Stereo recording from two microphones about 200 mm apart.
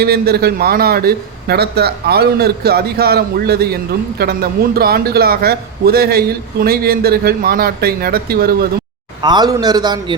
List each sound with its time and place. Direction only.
0.0 s a man's voice: 50° right (ahead or behind)
9.2 s a man's voice: 20° right (ahead or behind)